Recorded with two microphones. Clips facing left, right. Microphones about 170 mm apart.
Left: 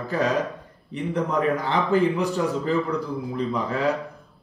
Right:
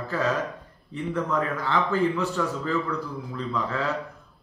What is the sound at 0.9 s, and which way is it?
A man's voice, 15° left (ahead or behind).